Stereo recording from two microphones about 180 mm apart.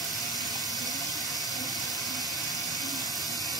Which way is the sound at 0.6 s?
Centre (ahead or behind).